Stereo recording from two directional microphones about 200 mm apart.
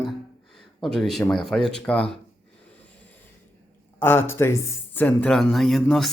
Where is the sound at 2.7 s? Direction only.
5° left (ahead or behind).